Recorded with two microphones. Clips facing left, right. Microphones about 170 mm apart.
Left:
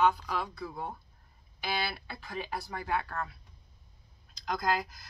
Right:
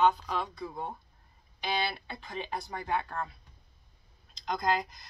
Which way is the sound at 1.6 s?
5° left (ahead or behind).